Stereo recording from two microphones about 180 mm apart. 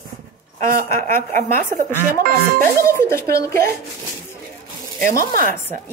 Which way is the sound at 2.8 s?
15° left (ahead or behind).